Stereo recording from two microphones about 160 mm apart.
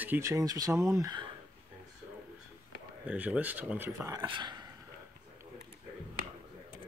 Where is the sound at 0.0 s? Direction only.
15° right (ahead or behind).